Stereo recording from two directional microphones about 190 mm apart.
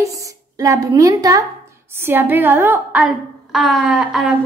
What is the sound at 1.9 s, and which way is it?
A woman's voice, 10° right (ahead or behind).